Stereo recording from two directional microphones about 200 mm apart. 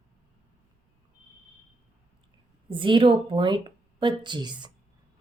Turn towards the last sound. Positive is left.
turn(degrees=-20)  # may be behind; listen again after turning